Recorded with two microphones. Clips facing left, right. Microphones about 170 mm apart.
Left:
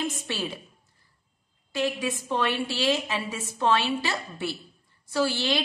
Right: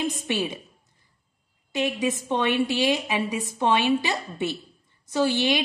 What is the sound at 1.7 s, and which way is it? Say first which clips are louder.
A woman's voice: right 2 dB; 20° right (ahead or behind).